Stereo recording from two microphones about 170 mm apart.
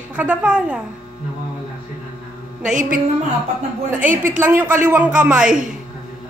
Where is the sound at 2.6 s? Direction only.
50° right (ahead or behind).